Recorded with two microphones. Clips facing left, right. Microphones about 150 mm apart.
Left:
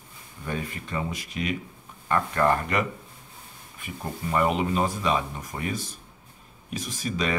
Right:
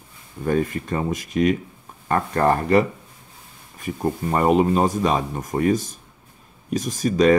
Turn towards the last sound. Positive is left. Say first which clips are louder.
# right 12 dB
turn(degrees=-45)  # may be behind; listen again after turning